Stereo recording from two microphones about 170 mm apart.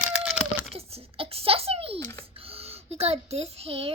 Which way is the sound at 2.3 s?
35° right (ahead or behind).